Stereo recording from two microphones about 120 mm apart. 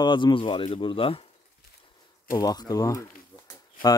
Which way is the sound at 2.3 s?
30° left (ahead or behind).